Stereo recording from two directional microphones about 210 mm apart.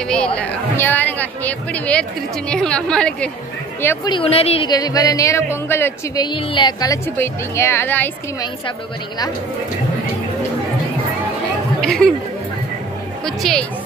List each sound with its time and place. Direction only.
0.1 s a woman's voice: 5° left (ahead or behind)
4.1 s a woman's voice: 25° left (ahead or behind); by 8.5 s 10° left (ahead or behind)
11.8 s chatter: 5° left (ahead or behind)
13.2 s speech: centre (ahead or behind)